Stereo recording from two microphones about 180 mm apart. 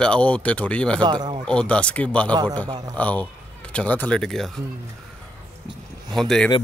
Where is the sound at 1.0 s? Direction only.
25° right (ahead or behind).